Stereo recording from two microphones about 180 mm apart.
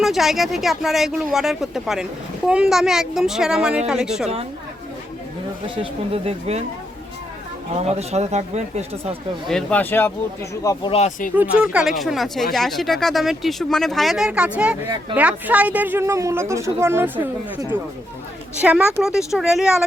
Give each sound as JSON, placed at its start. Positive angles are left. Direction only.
{"t": 0.0, "sound": "speech", "side_deg": 0}
{"t": 5.6, "sound": "speech", "side_deg": -30}
{"t": 7.8, "sound": "speech", "side_deg": -35}
{"t": 9.5, "sound": "speech", "side_deg": 5}
{"t": 10.9, "sound": "speech", "side_deg": 40}
{"t": 11.6, "sound": "speech", "side_deg": -5}
{"t": 18.6, "sound": "speech", "side_deg": -10}